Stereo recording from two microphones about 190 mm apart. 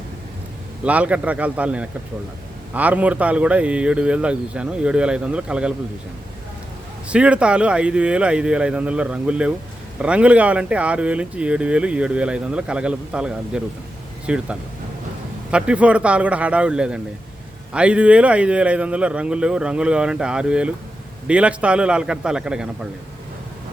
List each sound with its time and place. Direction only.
0.9 s a man's voice: 5° right (ahead or behind)
7.1 s a man's voice: 5° right (ahead or behind)